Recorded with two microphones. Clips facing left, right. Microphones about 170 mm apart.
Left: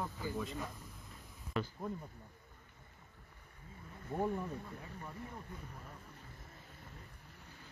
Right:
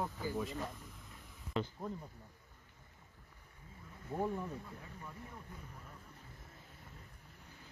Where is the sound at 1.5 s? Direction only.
20° right (ahead or behind).